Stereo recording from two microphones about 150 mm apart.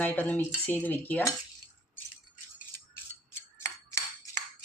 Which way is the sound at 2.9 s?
20° left (ahead or behind).